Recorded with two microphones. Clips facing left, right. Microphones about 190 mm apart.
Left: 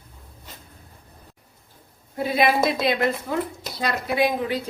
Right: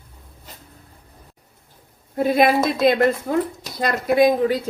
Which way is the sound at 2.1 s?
50° right (ahead or behind).